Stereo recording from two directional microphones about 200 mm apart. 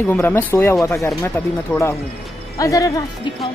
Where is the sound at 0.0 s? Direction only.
10° left (ahead or behind).